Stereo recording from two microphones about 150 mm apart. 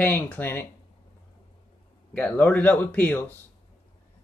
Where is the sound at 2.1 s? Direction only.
10° left (ahead or behind).